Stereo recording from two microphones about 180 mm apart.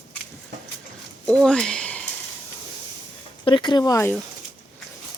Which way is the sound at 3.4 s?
25° left (ahead or behind).